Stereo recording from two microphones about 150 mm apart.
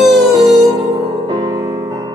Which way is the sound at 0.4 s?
25° right (ahead or behind).